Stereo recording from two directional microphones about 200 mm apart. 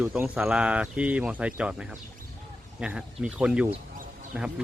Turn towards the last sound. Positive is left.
turn(degrees=-5)  # may be behind; listen again after turning